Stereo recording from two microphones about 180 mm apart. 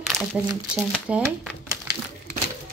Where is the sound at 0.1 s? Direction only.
40° right (ahead or behind).